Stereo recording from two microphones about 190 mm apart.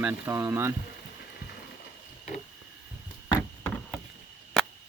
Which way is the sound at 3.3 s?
15° left (ahead or behind).